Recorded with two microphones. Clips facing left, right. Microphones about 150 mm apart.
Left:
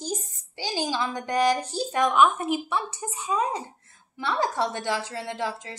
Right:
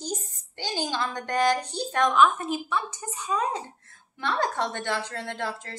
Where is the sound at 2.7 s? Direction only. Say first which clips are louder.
Left 1 dB; 30° left (ahead or behind).